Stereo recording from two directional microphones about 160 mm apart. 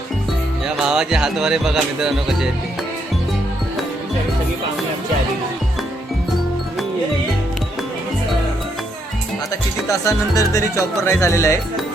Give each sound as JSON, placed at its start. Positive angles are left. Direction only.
{"t": 0.8, "sound": "music", "side_deg": -5}
{"t": 9.9, "sound": "speech", "side_deg": 20}